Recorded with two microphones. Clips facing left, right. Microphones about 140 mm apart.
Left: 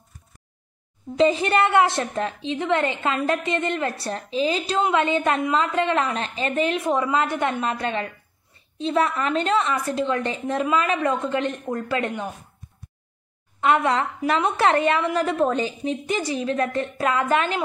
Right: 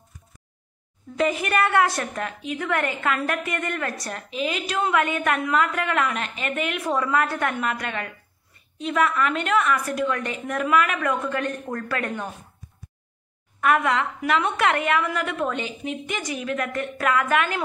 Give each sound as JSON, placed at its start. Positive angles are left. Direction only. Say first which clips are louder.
{"t": 1.1, "sound": "a woman's voice", "louder": "left 4 dB", "side_deg": 25}
{"t": 13.6, "sound": "a woman's voice", "louder": "left 1 dB", "side_deg": 25}